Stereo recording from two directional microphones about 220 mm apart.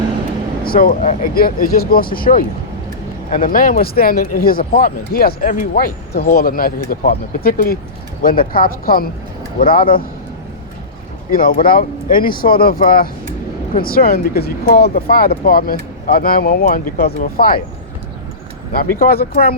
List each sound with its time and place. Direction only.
0.6 s speech: 40° left (ahead or behind)
11.3 s speech: 40° left (ahead or behind)
18.9 s speech: 40° left (ahead or behind)